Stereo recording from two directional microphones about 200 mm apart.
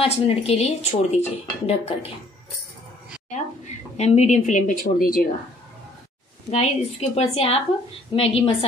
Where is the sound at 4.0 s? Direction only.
35° left (ahead or behind).